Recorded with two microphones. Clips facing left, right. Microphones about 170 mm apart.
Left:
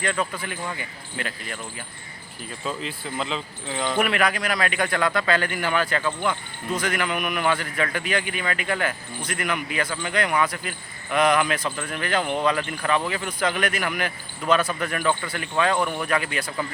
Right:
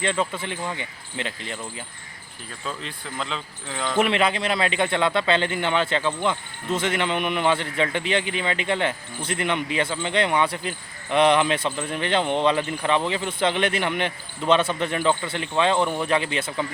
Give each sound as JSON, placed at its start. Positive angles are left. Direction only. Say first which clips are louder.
{"t": 0.0, "sound": "a man's voice", "louder": "right 2 dB", "side_deg": -25}
{"t": 2.6, "sound": "speech", "louder": "left 3 dB", "side_deg": 5}
{"t": 3.9, "sound": "a man's voice", "louder": "right 3 dB", "side_deg": -25}